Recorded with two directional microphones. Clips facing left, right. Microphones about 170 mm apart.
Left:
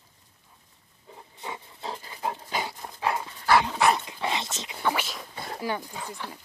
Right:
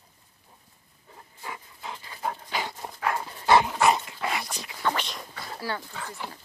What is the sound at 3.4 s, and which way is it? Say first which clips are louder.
Dog: right 2 dB; 20° right (ahead or behind).